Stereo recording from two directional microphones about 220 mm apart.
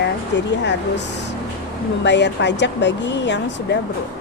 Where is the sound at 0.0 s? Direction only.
55° left (ahead or behind).